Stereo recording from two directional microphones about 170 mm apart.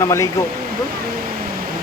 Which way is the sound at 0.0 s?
15° left (ahead or behind).